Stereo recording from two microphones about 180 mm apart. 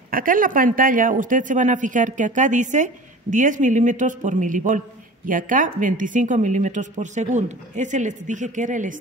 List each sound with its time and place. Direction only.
0.1 s speech: 50° right (ahead or behind)